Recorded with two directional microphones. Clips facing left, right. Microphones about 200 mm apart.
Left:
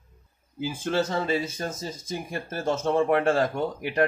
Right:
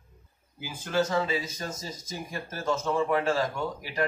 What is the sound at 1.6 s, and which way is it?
Speech, 55° left (ahead or behind).